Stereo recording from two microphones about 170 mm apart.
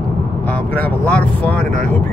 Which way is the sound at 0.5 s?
10° left (ahead or behind).